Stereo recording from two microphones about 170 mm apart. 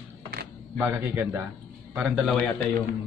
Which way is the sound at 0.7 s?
10° right (ahead or behind).